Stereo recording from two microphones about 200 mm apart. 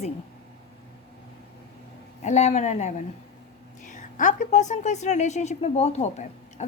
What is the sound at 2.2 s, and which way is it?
A woman's voice, 35° left (ahead or behind).